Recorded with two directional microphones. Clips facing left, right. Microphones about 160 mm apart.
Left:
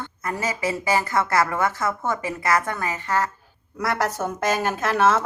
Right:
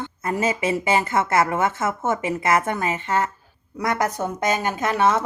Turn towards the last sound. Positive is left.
turn(degrees=-15)  # may be behind; listen again after turning